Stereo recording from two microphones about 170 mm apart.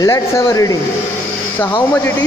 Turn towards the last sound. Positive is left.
turn(degrees=20)  # may be behind; listen again after turning